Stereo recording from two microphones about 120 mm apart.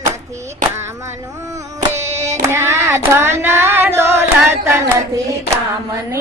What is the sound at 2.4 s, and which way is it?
Child singing, 20° right (ahead or behind).